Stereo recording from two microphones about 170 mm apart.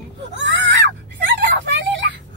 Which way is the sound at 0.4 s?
90° right.